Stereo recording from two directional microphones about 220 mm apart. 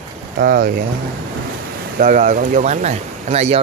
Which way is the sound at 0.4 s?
40° right (ahead or behind).